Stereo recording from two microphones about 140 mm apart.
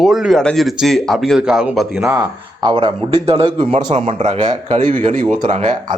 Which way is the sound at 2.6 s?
35° right (ahead or behind).